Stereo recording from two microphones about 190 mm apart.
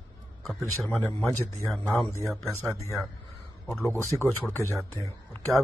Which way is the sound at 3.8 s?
15° left (ahead or behind).